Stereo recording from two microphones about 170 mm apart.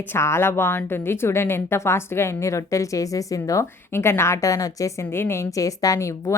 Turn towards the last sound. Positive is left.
turn(degrees=20)  # may be behind; listen again after turning